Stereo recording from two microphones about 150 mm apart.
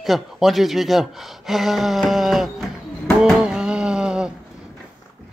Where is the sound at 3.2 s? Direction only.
5° right (ahead or behind).